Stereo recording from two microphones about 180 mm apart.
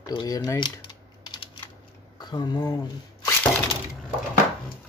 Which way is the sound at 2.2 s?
25° left (ahead or behind).